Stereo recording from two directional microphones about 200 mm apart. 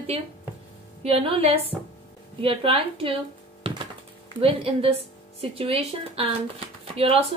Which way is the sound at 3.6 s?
25° right (ahead or behind).